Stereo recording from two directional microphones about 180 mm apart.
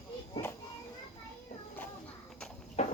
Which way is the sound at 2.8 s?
35° left (ahead or behind).